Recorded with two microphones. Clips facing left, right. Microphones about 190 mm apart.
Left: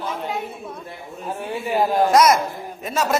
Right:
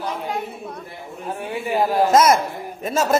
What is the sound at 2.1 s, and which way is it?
Speech, 25° right (ahead or behind).